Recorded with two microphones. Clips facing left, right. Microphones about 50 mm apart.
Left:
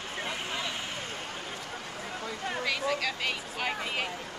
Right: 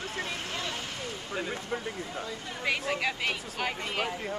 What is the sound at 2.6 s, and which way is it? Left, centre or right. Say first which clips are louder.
Speech: right 2 dB; right.